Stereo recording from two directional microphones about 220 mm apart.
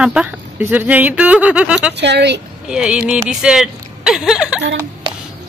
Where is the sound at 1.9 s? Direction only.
50° right (ahead or behind).